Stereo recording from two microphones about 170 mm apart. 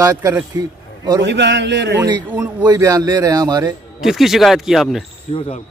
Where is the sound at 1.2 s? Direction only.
90° right.